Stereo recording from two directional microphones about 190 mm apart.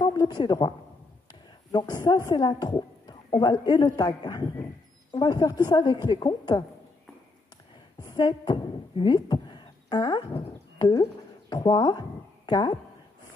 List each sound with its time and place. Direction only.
0.0 s a woman's voice: 20° left (ahead or behind)
8.0 s a woman's voice: 20° left (ahead or behind)